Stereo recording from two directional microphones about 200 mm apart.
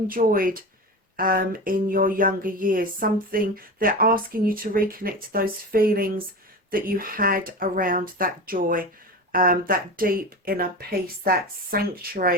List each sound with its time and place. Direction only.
0.1 s speech: 45° right (ahead or behind)